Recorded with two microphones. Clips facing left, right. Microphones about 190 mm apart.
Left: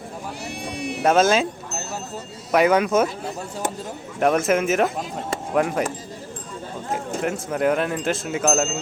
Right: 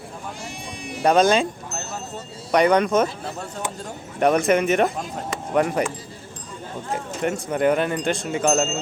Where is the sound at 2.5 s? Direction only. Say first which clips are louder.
Even; 5° left (ahead or behind).